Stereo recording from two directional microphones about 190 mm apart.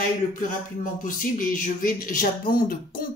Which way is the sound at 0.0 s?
45° left (ahead or behind).